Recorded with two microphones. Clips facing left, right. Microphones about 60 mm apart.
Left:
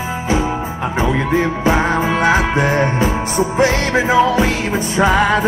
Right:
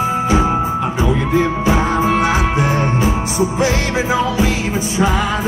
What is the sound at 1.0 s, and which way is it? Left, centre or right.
Music, left.